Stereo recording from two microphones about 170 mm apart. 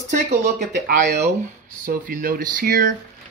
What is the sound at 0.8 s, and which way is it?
Speech, 65° right (ahead or behind).